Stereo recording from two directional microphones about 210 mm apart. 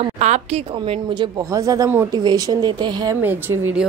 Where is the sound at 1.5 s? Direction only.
15° right (ahead or behind).